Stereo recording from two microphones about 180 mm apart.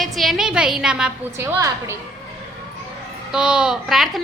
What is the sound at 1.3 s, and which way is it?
Speech, 15° right (ahead or behind).